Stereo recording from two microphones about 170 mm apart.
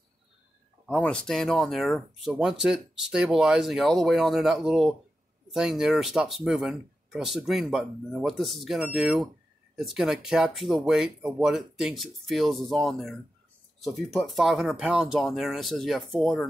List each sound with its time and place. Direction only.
0.8 s speech: 5° left (ahead or behind)